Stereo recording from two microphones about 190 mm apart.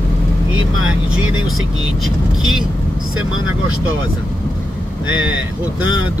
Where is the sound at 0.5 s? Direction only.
90° right.